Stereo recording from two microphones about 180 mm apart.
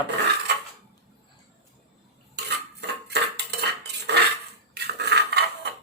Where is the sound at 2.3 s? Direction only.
70° right (ahead or behind).